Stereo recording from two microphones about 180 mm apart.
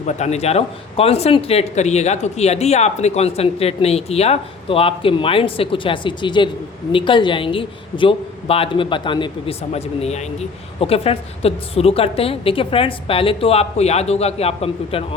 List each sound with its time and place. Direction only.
0.0 s a man's voice: 40° left (ahead or behind)